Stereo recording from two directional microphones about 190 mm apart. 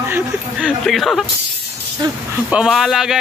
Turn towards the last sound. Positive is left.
turn(degrees=0)  # may be behind; listen again after turning